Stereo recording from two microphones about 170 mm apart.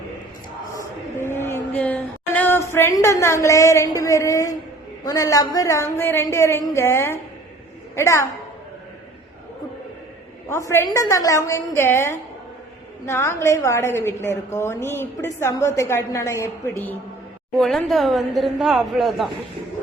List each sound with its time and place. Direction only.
0.8 s a sound: 15° left (ahead or behind)
5.0 s a woman's voice: 20° left (ahead or behind)
10.5 s a woman's voice: 15° left (ahead or behind)
17.6 s a woman's voice: centre (ahead or behind)